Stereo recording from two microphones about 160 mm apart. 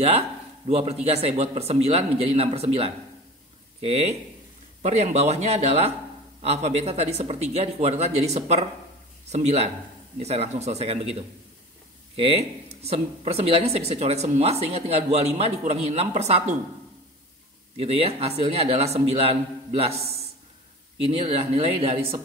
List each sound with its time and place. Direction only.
0.7 s speech: 40° right (ahead or behind)
12.8 s speech: 40° right (ahead or behind)
17.7 s speech: 35° right (ahead or behind)